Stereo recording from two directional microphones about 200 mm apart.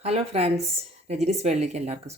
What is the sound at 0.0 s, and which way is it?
Speech, 30° right (ahead or behind).